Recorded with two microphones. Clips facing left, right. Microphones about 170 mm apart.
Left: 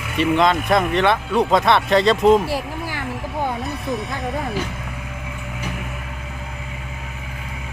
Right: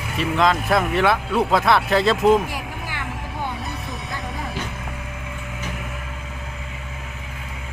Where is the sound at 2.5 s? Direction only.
35° left (ahead or behind).